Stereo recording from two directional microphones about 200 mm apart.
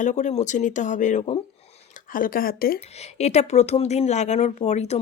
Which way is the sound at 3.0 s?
35° left (ahead or behind).